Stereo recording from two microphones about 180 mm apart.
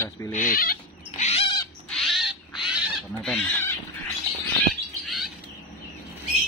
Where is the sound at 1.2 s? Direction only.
35° left (ahead or behind).